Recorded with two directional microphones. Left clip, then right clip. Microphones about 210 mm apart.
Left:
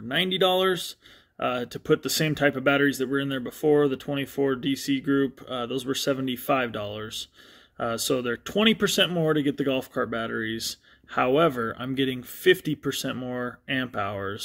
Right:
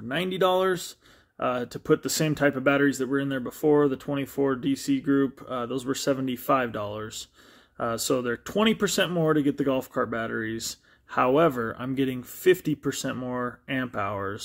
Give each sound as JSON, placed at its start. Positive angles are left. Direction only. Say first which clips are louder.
{"t": 0.1, "sound": "speech", "louder": "left 1 dB", "side_deg": 5}
{"t": 10.5, "sound": "a sound", "louder": "left 2 dB", "side_deg": -65}
{"t": 11.1, "sound": "speech", "louder": "even", "side_deg": 5}